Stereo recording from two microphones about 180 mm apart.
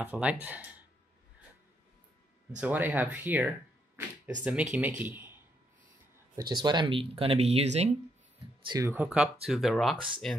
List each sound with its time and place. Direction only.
0.0 s speech: 10° right (ahead or behind)
2.5 s speech: 10° right (ahead or behind)
6.3 s speech: 25° right (ahead or behind)
8.6 s speech: 15° right (ahead or behind); by 10.4 s centre (ahead or behind)